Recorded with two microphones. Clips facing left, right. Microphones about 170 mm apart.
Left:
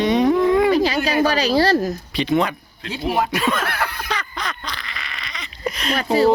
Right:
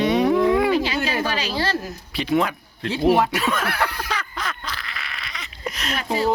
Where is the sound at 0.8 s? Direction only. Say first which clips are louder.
Left 5 dB; 40° left (ahead or behind).